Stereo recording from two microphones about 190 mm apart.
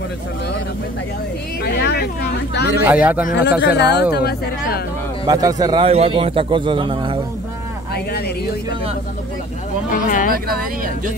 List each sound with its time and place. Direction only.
1.6 s a sound: 60° left (ahead or behind)
2.8 s speech: 10° right (ahead or behind)
3.6 s speech: 65° left (ahead or behind)
5.2 s a man's voice: 20° right (ahead or behind)
9.9 s speech: 45° left (ahead or behind)
10.6 s speech: 50° right (ahead or behind)